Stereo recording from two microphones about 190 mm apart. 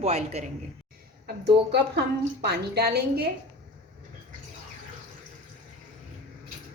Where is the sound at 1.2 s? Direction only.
60° right (ahead or behind).